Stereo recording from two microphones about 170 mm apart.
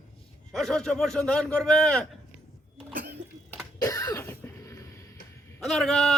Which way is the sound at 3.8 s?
20° left (ahead or behind).